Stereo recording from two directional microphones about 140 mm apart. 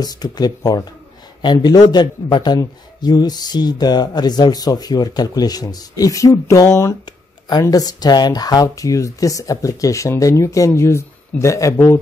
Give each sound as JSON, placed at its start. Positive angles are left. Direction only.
{"t": 0.0, "sound": "a man's voice", "side_deg": 30}